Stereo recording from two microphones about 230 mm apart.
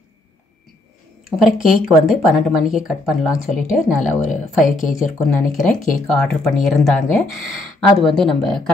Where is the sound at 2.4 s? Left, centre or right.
Centre.